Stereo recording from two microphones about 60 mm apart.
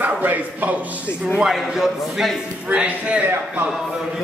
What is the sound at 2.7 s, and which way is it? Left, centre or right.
Speech, right.